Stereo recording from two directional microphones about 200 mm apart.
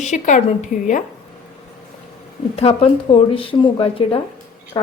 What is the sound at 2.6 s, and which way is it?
A woman's voice, 30° left (ahead or behind).